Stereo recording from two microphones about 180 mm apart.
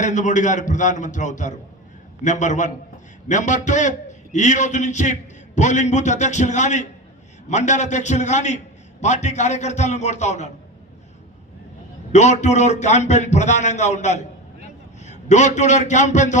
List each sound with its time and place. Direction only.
0.0 s a man's voice: 45° left (ahead or behind)
12.1 s a man's voice: 40° left (ahead or behind)